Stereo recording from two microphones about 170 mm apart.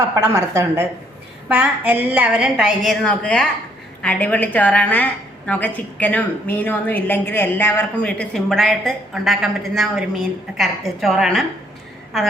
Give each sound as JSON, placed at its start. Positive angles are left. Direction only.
{"t": 0.3, "sound": "a woman's voice", "side_deg": -15}